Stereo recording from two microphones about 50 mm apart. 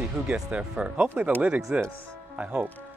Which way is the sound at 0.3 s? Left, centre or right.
Right.